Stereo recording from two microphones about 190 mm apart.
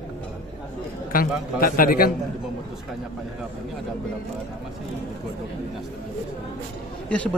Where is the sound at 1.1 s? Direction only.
50° left (ahead or behind).